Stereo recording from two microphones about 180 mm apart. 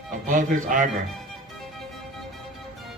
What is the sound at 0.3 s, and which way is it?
Speech, 45° right (ahead or behind).